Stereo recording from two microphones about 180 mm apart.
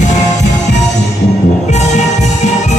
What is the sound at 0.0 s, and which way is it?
Music, 40° left (ahead or behind).